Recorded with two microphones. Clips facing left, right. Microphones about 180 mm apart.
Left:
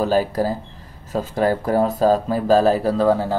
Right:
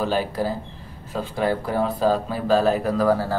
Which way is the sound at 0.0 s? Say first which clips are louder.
Left 4 dB; 40° left (ahead or behind).